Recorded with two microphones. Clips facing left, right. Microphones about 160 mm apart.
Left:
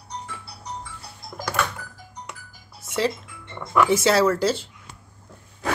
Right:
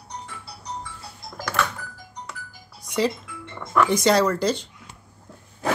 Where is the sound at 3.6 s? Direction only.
5° left (ahead or behind).